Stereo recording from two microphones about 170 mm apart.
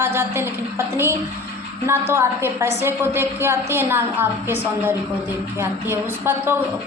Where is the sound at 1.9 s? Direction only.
15° right (ahead or behind).